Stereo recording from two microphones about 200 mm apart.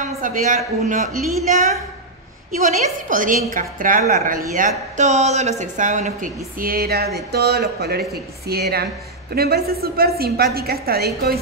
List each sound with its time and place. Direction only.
0.2 s speech: 40° right (ahead or behind)
2.5 s a woman's voice: 35° right (ahead or behind)